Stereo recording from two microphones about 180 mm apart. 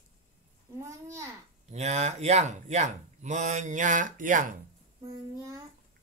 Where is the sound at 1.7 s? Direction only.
40° right (ahead or behind).